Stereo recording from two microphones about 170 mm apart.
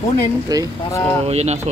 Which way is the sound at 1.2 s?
40° right (ahead or behind).